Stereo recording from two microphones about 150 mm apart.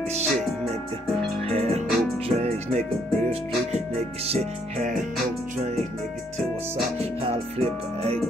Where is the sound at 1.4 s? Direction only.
40° right (ahead or behind).